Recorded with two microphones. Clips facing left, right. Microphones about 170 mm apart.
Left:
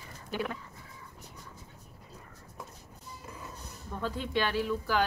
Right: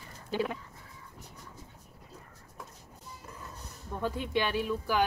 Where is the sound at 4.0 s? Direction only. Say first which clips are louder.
Right 1 dB; 20° right (ahead or behind).